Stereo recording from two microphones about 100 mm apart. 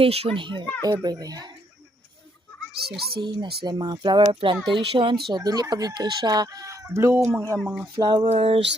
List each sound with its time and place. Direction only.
0.0 s speech: 75° right (ahead or behind); by 0.6 s 55° right (ahead or behind)
0.8 s speech: 40° right (ahead or behind)
3.2 s speech: 50° right (ahead or behind)
4.2 s a child's voice: 60° right (ahead or behind)
4.5 s speech: centre (ahead or behind)
4.9 s a child's voice: 55° right (ahead or behind)
5.3 s speech: 40° right (ahead or behind)
7.6 s a sound: 5° right (ahead or behind)
7.9 s speech: 50° right (ahead or behind)
8.3 s speech: 70° right (ahead or behind)